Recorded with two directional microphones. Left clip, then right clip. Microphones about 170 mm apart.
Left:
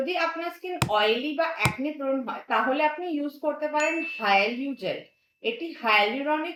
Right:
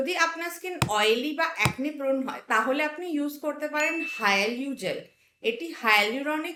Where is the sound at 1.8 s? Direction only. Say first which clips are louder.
Right 1 dB; 20° left (ahead or behind).